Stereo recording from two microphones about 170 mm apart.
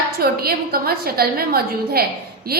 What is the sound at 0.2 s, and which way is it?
A woman's voice, 65° right (ahead or behind).